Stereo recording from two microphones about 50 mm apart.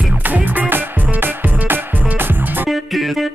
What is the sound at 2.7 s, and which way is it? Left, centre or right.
Music, centre.